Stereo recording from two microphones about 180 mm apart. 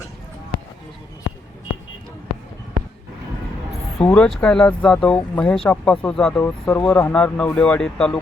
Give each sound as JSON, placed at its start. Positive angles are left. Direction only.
{"t": 3.9, "sound": "speech", "side_deg": 5}